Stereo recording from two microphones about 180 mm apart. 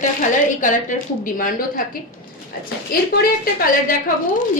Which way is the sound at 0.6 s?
45° left (ahead or behind).